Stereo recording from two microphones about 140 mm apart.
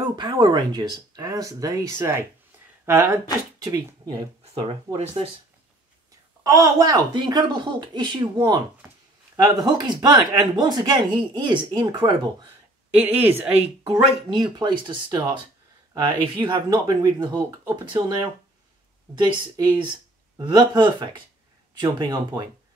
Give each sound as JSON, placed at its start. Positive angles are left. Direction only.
{"t": 0.0, "sound": "speech", "side_deg": -30}
{"t": 4.6, "sound": "speech", "side_deg": -40}
{"t": 6.4, "sound": "speech", "side_deg": -25}
{"t": 13.2, "sound": "speech", "side_deg": -15}
{"t": 14.3, "sound": "speech", "side_deg": -30}
{"t": 19.1, "sound": "speech", "side_deg": -30}